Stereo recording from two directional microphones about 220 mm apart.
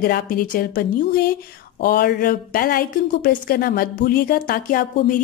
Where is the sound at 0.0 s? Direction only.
40° left (ahead or behind).